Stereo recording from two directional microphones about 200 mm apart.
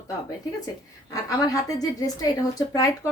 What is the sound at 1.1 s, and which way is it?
A woman's voice, 15° left (ahead or behind).